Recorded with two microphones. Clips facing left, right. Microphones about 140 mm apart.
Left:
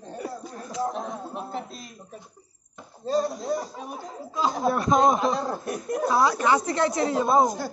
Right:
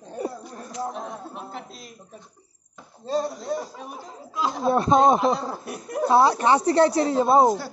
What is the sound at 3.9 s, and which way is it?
Speech, centre (ahead or behind).